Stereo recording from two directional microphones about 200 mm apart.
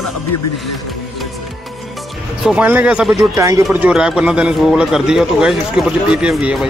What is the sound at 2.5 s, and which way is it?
Speech, 10° right (ahead or behind).